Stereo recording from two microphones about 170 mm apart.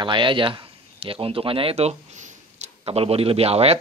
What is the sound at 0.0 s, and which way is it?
A man's voice, 30° right (ahead or behind).